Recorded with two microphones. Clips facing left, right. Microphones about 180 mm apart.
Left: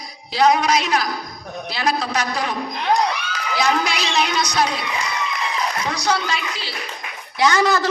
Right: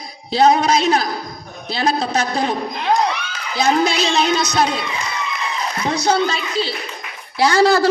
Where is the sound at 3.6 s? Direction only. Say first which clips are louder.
Right 5 dB; 25° right (ahead or behind).